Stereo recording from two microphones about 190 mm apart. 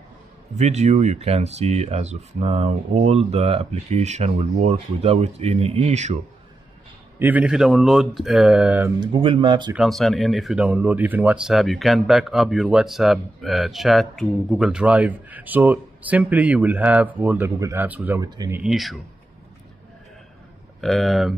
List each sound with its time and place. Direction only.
0.6 s speech: 35° right (ahead or behind)
7.2 s speech: 10° right (ahead or behind)
9.0 s speech: 25° right (ahead or behind)
9.8 s speech: centre (ahead or behind); by 18.6 s 15° right (ahead or behind)
18.6 s speech: centre (ahead or behind)
20.8 s speech: centre (ahead or behind)